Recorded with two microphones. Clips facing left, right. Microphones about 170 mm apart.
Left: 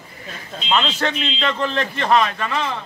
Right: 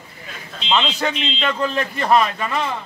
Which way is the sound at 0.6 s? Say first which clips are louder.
Even; 5° right (ahead or behind).